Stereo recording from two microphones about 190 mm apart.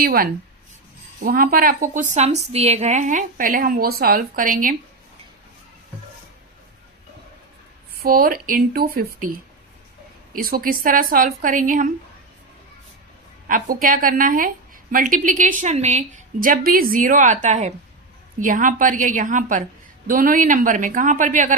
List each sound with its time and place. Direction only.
0.0 s a woman's voice: 50° right (ahead or behind)
8.0 s a woman's voice: 50° right (ahead or behind)
10.3 s a woman's voice: 50° right (ahead or behind)
13.5 s a woman's voice: 45° right (ahead or behind)